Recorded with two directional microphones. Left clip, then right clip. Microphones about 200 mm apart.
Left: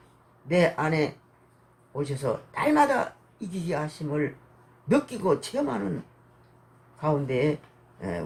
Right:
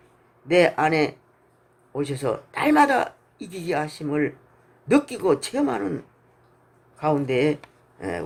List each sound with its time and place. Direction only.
0.4 s speech: 40° right (ahead or behind)
7.0 s speech: 45° right (ahead or behind)